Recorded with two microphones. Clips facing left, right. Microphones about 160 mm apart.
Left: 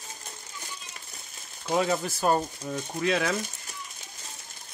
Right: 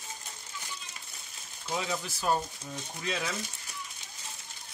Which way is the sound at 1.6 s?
55° left (ahead or behind).